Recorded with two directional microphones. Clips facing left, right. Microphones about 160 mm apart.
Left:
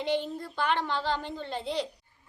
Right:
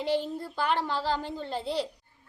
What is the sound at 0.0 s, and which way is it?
A woman's voice, 5° right (ahead or behind).